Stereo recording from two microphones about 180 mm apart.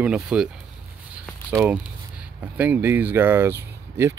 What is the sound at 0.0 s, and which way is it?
Speech, 5° right (ahead or behind).